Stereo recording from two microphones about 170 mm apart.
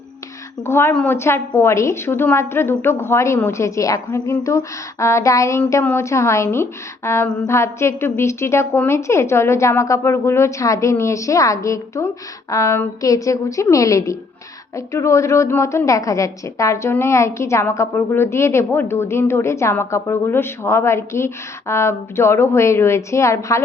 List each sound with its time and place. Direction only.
0.6 s a woman's voice: 15° left (ahead or behind)